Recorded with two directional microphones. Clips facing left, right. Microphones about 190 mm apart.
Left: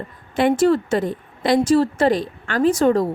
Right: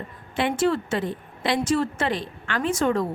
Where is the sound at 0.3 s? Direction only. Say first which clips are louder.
Left 6 dB; 40° left (ahead or behind).